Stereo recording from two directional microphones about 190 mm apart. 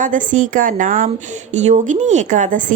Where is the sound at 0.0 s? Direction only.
45° right (ahead or behind).